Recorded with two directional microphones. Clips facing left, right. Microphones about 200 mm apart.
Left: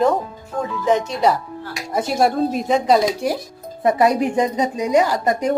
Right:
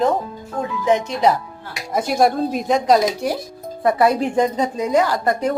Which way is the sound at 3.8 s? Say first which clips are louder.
Even; 20° left (ahead or behind).